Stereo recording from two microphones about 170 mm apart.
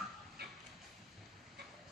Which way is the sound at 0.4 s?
70° right (ahead or behind).